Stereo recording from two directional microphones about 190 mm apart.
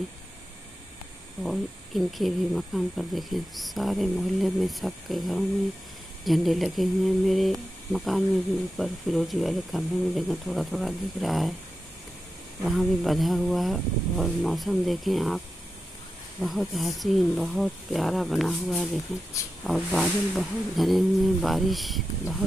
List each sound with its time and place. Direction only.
1.4 s speech: centre (ahead or behind)
12.6 s speech: centre (ahead or behind)